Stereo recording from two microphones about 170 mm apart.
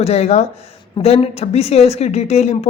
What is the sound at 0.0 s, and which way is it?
Speech, 40° left (ahead or behind).